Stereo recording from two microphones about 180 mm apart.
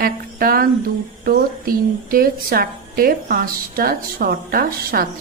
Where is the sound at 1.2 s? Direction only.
55° right (ahead or behind).